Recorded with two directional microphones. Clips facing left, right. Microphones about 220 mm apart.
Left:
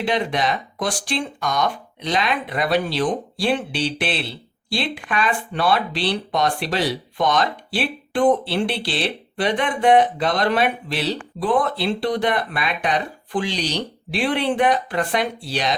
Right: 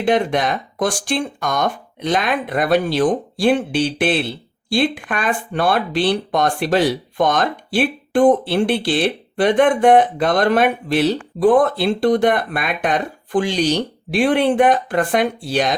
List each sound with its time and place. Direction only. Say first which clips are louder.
0.0 s speech: right 5 dB; 50° right (ahead or behind)